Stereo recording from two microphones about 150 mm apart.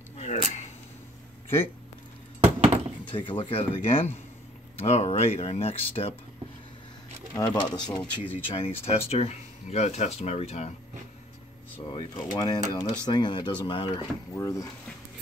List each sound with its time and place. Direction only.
0.2 s a sound: 50° left (ahead or behind)
2.4 s a sound: 45° right (ahead or behind)
3.1 s speech: 35° left (ahead or behind)
7.3 s speech: 25° left (ahead or behind); by 10.7 s 45° left (ahead or behind)
11.9 s speech: 30° left (ahead or behind)
14.3 s speech: 20° left (ahead or behind)